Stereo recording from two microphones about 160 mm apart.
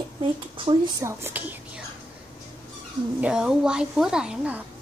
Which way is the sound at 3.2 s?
5° right (ahead or behind).